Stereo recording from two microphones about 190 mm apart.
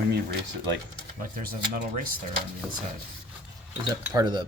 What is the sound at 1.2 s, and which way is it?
Speech, 50° right (ahead or behind).